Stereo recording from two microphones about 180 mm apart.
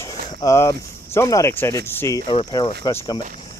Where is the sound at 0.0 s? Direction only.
15° left (ahead or behind).